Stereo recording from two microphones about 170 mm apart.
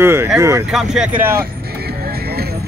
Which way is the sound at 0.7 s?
Centre (ahead or behind).